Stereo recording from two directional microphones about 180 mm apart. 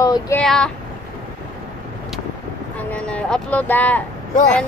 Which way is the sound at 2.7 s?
5° left (ahead or behind).